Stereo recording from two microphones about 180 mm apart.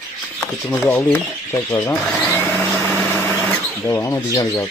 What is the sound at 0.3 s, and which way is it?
Speech, 5° left (ahead or behind).